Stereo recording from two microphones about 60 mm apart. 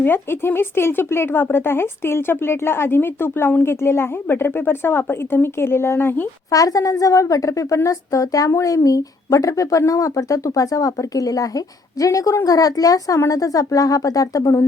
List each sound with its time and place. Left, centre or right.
0.0 s speech: left
6.5 s speech: left
8.4 s a woman's voice: left